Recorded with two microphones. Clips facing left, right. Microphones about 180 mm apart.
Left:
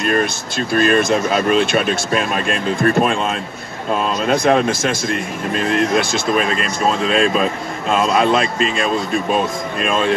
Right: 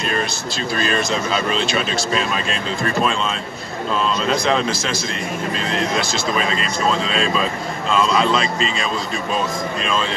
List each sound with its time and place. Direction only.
0.0 s speech: 55° left (ahead or behind)